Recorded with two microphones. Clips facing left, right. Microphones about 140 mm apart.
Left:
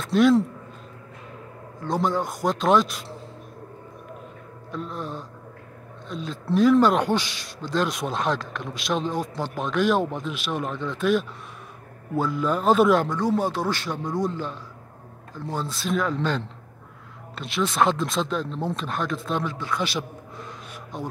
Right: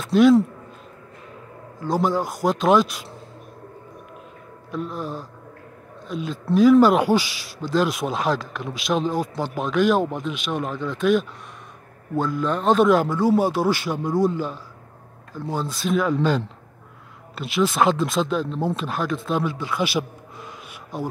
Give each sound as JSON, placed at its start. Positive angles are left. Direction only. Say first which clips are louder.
{"t": 0.0, "sound": "speech", "louder": "right 3 dB", "side_deg": 0}
{"t": 1.8, "sound": "speech", "louder": "right 3 dB", "side_deg": 0}
{"t": 4.6, "sound": "speech", "louder": "right 3 dB", "side_deg": -5}